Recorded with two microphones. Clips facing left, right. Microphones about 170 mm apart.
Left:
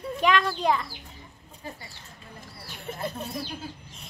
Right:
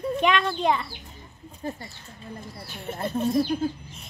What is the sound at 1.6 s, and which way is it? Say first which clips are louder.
Speech: right 7 dB; 50° right (ahead or behind).